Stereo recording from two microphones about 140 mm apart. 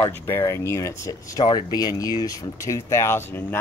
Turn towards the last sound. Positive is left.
turn(degrees=15)  # may be behind; listen again after turning